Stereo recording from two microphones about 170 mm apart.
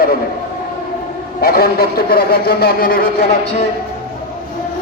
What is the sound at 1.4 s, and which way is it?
A man's voice, 65° left (ahead or behind).